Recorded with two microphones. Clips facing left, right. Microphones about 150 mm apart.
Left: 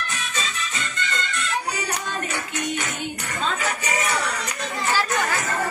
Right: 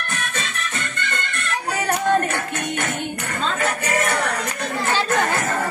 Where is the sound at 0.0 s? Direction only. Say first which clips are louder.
Right 2 dB; 55° right (ahead or behind).